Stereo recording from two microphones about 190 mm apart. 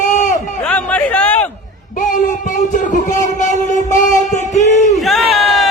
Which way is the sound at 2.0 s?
45° left (ahead or behind).